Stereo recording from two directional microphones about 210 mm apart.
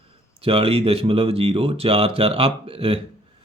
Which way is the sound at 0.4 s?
25° right (ahead or behind).